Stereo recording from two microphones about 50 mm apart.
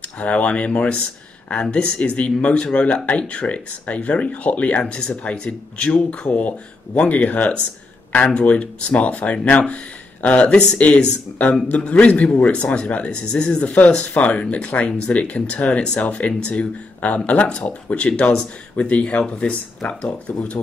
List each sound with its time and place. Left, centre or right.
0.2 s speech: left